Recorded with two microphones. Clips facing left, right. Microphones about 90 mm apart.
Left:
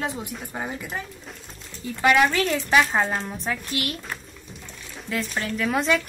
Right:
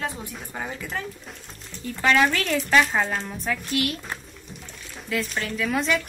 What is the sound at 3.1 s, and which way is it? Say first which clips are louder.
Speech: left 1 dB; 5° left (ahead or behind).